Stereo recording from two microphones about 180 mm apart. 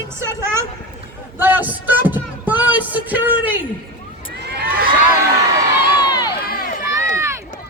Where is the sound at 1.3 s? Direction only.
10° right (ahead or behind).